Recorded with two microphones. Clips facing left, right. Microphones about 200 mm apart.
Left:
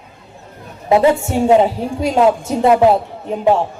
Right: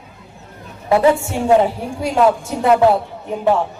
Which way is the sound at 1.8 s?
25° left (ahead or behind).